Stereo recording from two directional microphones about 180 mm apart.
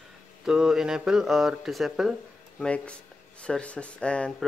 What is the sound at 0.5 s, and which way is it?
Speech, 5° right (ahead or behind).